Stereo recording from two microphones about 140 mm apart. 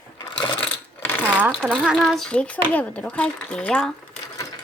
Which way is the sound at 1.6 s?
Centre (ahead or behind).